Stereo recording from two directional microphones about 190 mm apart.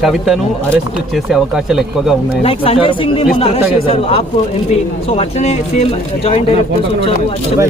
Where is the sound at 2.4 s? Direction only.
30° left (ahead or behind).